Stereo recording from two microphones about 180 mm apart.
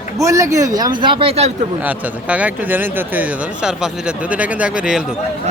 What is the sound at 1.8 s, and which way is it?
Speech, 10° right (ahead or behind).